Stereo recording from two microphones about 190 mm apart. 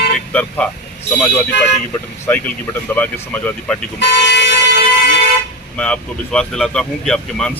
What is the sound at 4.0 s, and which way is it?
Speech, 70° left (ahead or behind).